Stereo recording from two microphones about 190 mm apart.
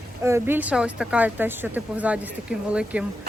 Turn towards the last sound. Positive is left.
turn(degrees=-5)  # may be behind; listen again after turning